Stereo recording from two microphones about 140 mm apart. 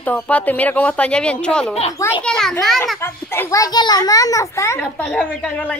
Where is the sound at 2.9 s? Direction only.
15° left (ahead or behind).